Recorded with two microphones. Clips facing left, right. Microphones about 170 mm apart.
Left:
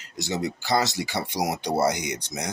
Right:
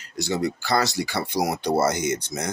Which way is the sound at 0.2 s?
20° left (ahead or behind).